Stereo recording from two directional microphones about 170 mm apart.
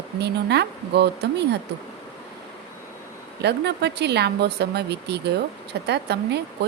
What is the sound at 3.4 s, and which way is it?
Speech, 75° right (ahead or behind).